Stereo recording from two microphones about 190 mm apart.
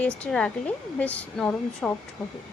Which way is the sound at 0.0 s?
5° left (ahead or behind).